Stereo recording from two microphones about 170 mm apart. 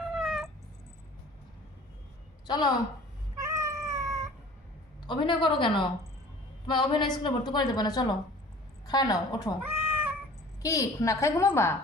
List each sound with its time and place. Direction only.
0.0 s cat: centre (ahead or behind)
2.5 s a woman's voice: 25° left (ahead or behind)
3.3 s cat: 20° right (ahead or behind)
5.0 s a woman's voice: 30° left (ahead or behind)
9.9 s cat: 10° right (ahead or behind)
10.6 s a woman's voice: 20° left (ahead or behind)